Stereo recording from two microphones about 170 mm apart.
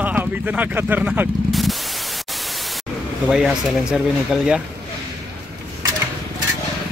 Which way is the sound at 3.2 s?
5° right (ahead or behind).